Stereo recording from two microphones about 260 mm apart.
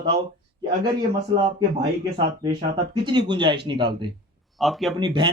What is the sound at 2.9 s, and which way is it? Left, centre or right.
A man's voice, centre.